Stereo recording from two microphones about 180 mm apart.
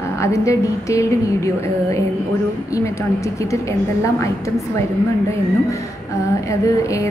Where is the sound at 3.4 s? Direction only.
15° left (ahead or behind).